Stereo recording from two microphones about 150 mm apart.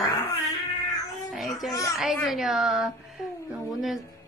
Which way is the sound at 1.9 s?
Centre (ahead or behind).